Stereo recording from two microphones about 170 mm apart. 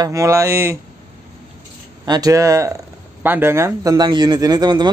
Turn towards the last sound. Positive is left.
turn(degrees=-25)  # may be behind; listen again after turning